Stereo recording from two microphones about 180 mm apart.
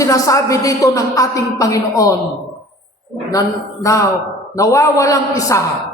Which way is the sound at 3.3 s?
20° left (ahead or behind).